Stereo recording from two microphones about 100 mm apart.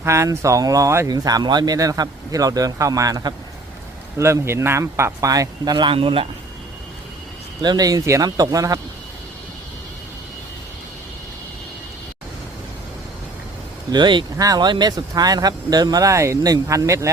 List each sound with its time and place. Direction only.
0.0 s speech: 30° right (ahead or behind)
4.2 s speech: 30° right (ahead or behind); by 6.2 s 60° right (ahead or behind)
7.6 s speech: 40° right (ahead or behind)
13.9 s speech: 50° right (ahead or behind)
14.3 s speech: 40° right (ahead or behind)